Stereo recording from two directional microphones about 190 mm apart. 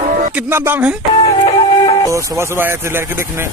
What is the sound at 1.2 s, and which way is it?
Music, 25° left (ahead or behind).